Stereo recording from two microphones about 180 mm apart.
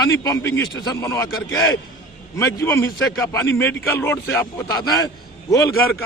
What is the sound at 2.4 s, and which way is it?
A man's voice, 15° left (ahead or behind).